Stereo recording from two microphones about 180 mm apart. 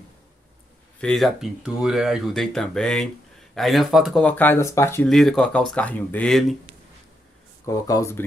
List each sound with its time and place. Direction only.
1.0 s speech: centre (ahead or behind)
5.0 s speech: centre (ahead or behind)
7.6 s speech: 20° left (ahead or behind)